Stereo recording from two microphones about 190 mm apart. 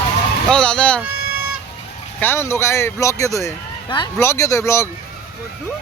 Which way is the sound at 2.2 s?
15° left (ahead or behind).